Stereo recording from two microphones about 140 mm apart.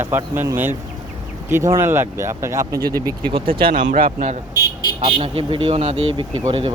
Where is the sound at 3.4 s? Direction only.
90° right.